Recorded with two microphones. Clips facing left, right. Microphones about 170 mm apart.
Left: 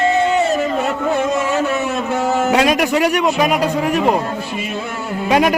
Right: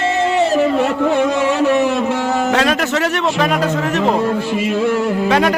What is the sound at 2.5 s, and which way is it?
Speech, 10° left (ahead or behind).